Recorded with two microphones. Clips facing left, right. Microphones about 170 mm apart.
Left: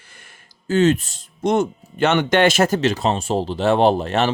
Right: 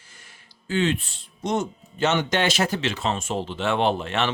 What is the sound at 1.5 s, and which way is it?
Speech, 60° left (ahead or behind).